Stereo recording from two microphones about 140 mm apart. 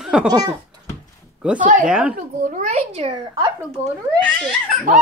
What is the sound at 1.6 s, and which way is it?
Speech, 65° right (ahead or behind).